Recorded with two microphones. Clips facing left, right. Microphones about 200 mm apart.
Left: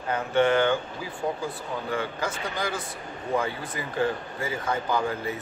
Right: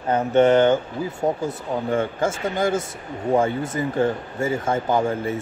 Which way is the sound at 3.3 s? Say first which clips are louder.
Right 7 dB; 45° right (ahead or behind).